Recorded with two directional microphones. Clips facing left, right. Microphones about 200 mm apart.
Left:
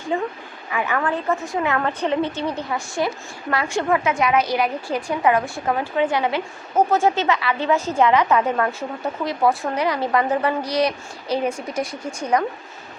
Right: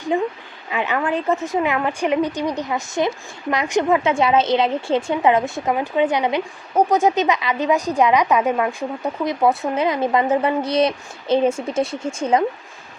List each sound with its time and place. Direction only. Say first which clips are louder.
0.1 s a woman's voice: right 3 dB; 20° right (ahead or behind)